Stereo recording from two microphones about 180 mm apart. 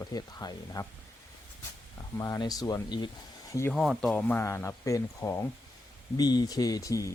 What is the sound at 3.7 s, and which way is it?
Speech, centre (ahead or behind).